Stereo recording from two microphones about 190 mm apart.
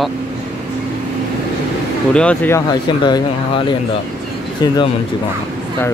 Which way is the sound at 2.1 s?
5° left (ahead or behind).